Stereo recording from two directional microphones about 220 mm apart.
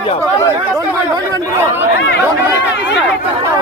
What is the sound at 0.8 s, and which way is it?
Speech, 15° right (ahead or behind).